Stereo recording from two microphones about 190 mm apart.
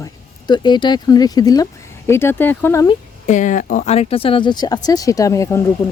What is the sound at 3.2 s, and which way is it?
Speech, 40° left (ahead or behind).